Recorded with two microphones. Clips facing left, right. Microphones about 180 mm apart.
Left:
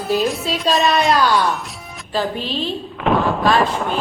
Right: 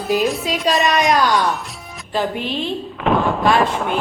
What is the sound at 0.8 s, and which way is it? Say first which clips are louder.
A woman's voice: left 1 dB; 15° right (ahead or behind).